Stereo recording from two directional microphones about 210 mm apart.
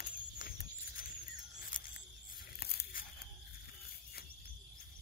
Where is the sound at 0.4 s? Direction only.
45° left (ahead or behind).